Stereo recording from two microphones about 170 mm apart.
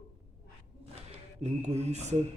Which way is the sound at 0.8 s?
35° right (ahead or behind).